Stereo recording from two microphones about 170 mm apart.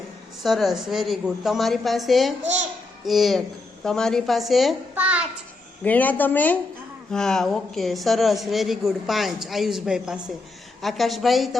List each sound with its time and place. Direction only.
0.4 s a woman's voice: centre (ahead or behind)
2.4 s a child's voice: 45° right (ahead or behind)
3.1 s a woman's voice: centre (ahead or behind)
5.8 s a woman's voice: 10° left (ahead or behind)